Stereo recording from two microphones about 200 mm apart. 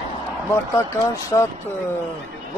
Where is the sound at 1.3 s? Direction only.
15° left (ahead or behind).